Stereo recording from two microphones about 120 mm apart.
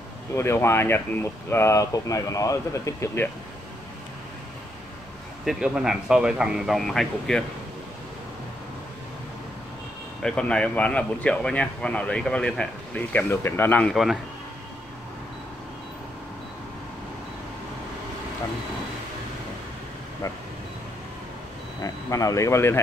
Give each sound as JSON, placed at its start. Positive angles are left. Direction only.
{"t": 0.3, "sound": "speech", "side_deg": 20}
{"t": 5.4, "sound": "speech", "side_deg": -5}
{"t": 10.2, "sound": "speech", "side_deg": 10}
{"t": 21.8, "sound": "speech", "side_deg": 25}